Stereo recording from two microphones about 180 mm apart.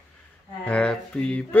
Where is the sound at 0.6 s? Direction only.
5° left (ahead or behind).